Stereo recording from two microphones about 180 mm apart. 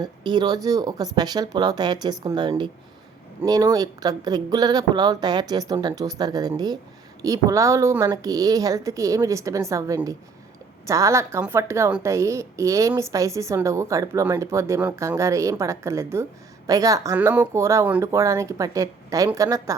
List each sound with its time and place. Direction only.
0.0 s a woman's voice: 25° right (ahead or behind)